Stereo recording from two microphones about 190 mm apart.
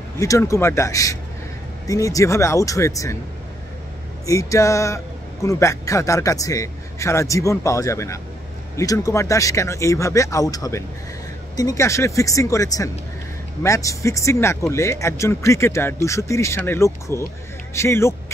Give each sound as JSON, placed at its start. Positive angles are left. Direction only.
{"t": 0.2, "sound": "speech", "side_deg": 15}
{"t": 4.3, "sound": "speech", "side_deg": 15}